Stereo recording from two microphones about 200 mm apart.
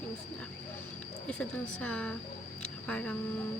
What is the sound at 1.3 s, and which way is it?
A woman's voice, 5° left (ahead or behind).